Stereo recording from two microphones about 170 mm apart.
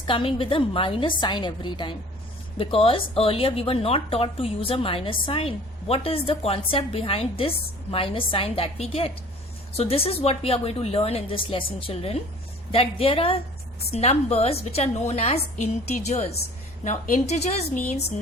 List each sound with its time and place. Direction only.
0.1 s a woman's voice: 30° left (ahead or behind)